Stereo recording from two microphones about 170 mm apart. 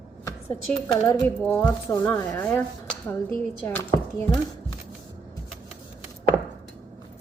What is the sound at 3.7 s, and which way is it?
Speech, 15° left (ahead or behind).